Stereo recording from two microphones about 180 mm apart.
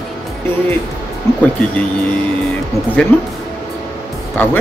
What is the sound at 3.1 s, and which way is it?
Speech, 10° left (ahead or behind).